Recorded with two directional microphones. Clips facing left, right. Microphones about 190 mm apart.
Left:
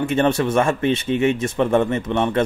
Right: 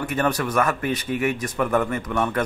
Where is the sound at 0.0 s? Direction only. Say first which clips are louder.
Left 5 dB; 25° left (ahead or behind).